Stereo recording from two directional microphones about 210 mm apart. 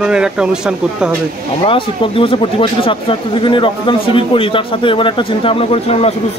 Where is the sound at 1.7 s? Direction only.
25° left (ahead or behind).